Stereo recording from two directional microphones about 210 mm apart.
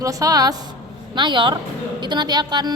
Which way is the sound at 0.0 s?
15° right (ahead or behind).